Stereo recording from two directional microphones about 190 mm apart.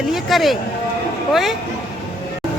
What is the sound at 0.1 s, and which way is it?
Speech, centre (ahead or behind).